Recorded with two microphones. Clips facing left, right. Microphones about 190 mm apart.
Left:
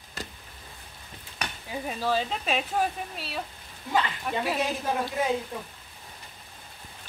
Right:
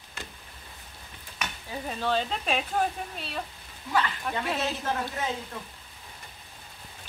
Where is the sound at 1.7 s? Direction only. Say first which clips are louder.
Left 1 dB; 5° left (ahead or behind).